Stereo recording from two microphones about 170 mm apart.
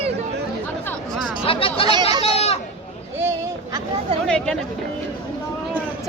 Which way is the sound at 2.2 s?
35° left (ahead or behind).